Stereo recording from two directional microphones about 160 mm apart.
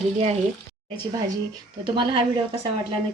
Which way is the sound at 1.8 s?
30° right (ahead or behind).